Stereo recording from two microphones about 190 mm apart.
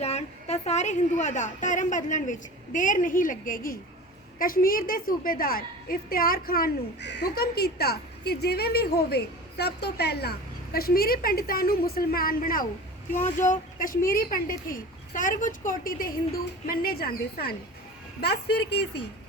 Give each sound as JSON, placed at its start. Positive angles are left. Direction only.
{"t": 0.0, "sound": "a woman's voice", "side_deg": 35}